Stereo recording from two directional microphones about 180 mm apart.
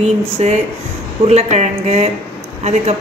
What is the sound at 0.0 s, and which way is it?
A woman's voice, 35° right (ahead or behind).